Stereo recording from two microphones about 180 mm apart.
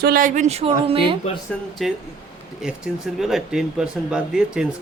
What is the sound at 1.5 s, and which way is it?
Speech, 5° left (ahead or behind).